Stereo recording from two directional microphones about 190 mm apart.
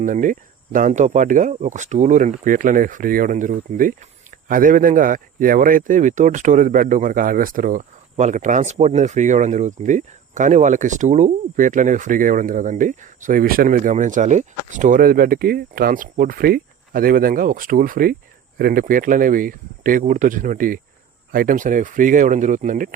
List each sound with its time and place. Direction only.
0.0 s speech: 45° right (ahead or behind)